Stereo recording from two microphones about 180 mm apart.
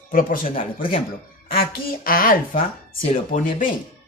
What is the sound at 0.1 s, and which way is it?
Speech, 50° left (ahead or behind).